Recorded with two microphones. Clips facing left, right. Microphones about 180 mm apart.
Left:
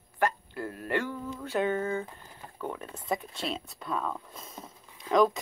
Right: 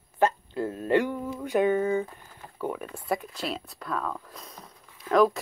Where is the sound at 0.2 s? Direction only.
20° right (ahead or behind).